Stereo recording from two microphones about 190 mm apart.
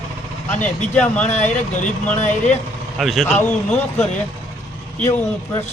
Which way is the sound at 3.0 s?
Centre (ahead or behind).